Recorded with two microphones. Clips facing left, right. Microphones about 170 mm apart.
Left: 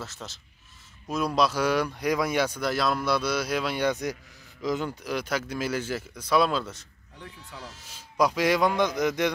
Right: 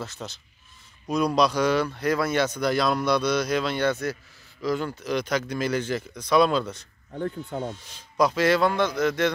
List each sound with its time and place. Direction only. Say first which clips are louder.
0.0 s speech: right 4 dB; centre (ahead or behind)
7.1 s speech: right 15 dB; 55° right (ahead or behind)
7.8 s speech: even; 10° left (ahead or behind)